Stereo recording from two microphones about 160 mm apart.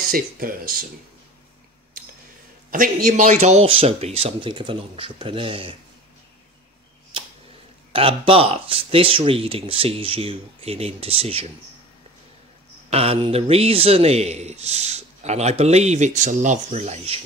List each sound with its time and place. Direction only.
0.1 s speech: 60° right (ahead or behind)
2.7 s speech: 55° right (ahead or behind); by 5.8 s 35° right (ahead or behind)
7.9 s speech: 35° right (ahead or behind)
12.9 s speech: 40° right (ahead or behind)